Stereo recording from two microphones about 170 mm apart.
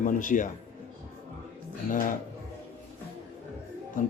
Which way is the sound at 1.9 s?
50° left (ahead or behind).